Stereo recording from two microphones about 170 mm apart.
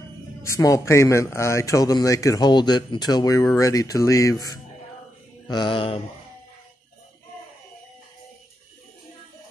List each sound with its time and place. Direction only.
0.4 s a man's voice: 20° left (ahead or behind)